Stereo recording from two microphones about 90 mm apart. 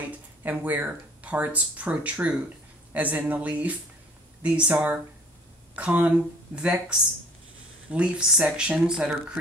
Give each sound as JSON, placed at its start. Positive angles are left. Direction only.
{"t": 0.4, "sound": "speech", "side_deg": -20}
{"t": 5.8, "sound": "speech", "side_deg": -15}